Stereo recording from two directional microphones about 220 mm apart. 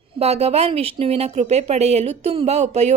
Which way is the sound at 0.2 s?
25° right (ahead or behind).